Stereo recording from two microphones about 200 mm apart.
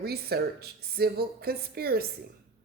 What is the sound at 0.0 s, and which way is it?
Speech, 50° right (ahead or behind).